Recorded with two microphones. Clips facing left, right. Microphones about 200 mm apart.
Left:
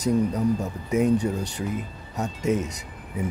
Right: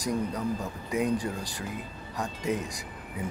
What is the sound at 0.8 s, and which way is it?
Speech, 25° left (ahead or behind).